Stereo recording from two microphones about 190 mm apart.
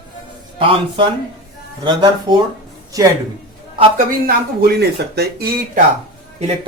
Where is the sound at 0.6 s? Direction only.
25° right (ahead or behind).